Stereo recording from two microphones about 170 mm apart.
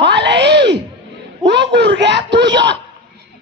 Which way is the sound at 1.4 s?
90° right.